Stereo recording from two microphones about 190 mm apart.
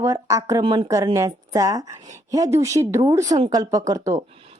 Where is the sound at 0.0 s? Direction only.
15° right (ahead or behind).